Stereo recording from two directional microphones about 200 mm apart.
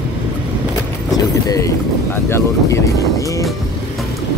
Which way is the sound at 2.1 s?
15° left (ahead or behind).